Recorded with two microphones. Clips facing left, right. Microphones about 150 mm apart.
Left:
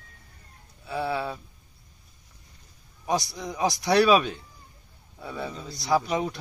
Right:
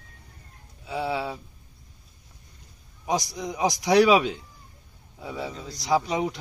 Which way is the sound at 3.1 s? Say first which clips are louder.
Even; 15° right (ahead or behind).